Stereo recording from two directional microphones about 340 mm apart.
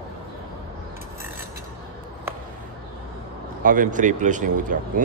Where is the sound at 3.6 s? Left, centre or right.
Right.